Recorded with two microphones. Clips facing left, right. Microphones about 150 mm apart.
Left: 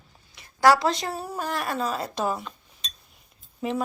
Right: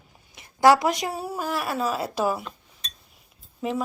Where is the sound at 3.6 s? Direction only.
Centre (ahead or behind).